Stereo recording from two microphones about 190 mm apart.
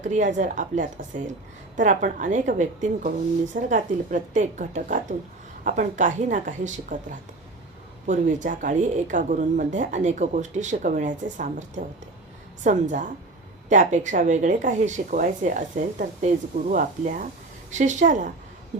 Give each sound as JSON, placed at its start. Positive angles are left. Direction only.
{"t": 0.0, "sound": "a woman's voice", "side_deg": -40}
{"t": 12.6, "sound": "a woman's voice", "side_deg": -40}